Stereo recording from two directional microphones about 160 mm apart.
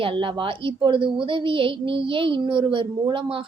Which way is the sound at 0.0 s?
35° right (ahead or behind).